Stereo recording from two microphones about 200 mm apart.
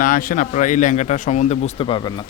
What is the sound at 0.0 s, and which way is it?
Speech, 45° left (ahead or behind).